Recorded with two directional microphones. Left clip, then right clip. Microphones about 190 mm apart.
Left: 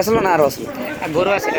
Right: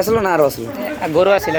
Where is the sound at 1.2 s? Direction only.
65° right (ahead or behind).